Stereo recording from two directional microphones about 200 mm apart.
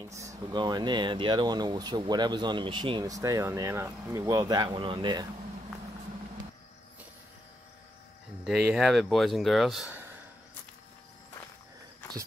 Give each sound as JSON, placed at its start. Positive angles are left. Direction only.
{"t": 0.2, "sound": "speech", "side_deg": -20}
{"t": 8.5, "sound": "speech", "side_deg": -5}